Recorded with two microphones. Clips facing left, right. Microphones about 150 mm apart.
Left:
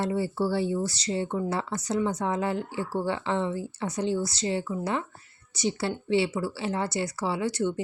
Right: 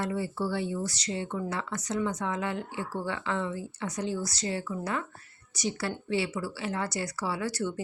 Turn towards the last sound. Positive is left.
turn(degrees=20)  # may be behind; listen again after turning